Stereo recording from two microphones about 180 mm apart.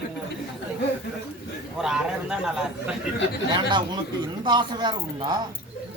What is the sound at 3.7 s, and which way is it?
Speech, 25° right (ahead or behind).